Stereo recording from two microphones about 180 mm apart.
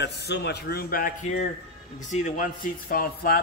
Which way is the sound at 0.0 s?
70° left (ahead or behind).